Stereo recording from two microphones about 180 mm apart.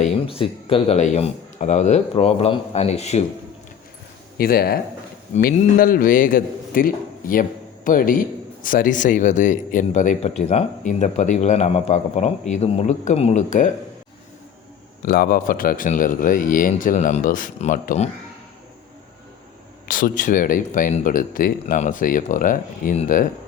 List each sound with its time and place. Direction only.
0.0 s speech: 30° left (ahead or behind)
4.4 s speech: 55° left (ahead or behind)
15.0 s speech: 55° left (ahead or behind); by 18.1 s 40° left (ahead or behind)
19.9 s speech: 50° left (ahead or behind)